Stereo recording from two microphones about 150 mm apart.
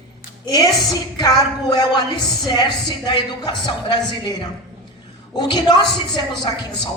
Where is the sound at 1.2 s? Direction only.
25° left (ahead or behind).